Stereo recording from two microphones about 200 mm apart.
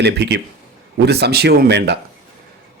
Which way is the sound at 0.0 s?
60° right (ahead or behind).